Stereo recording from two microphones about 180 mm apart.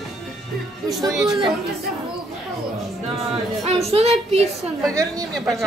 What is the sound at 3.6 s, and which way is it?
Speech, 35° right (ahead or behind).